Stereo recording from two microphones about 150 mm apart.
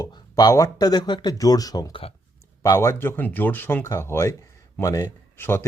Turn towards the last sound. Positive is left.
turn(degrees=15)  # may be behind; listen again after turning